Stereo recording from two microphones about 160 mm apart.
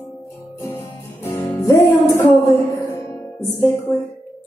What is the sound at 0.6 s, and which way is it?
Music, 15° left (ahead or behind).